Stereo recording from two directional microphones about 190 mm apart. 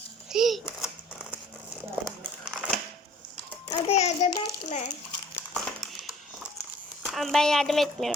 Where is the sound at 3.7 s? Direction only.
35° left (ahead or behind).